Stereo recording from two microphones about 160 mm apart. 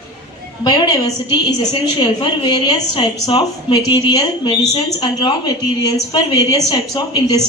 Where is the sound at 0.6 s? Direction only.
25° left (ahead or behind).